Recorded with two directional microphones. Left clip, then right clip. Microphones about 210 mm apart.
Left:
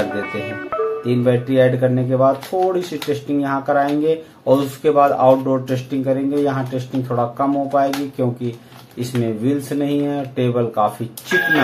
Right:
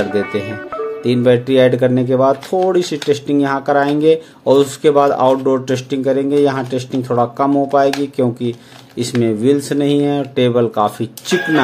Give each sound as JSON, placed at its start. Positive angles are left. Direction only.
{"t": 0.1, "sound": "music", "side_deg": 0}
{"t": 1.0, "sound": "speech", "side_deg": -50}